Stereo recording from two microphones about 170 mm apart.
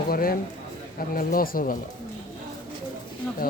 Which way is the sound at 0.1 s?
60° left (ahead or behind).